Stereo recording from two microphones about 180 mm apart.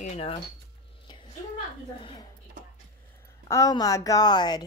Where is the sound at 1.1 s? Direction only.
25° left (ahead or behind).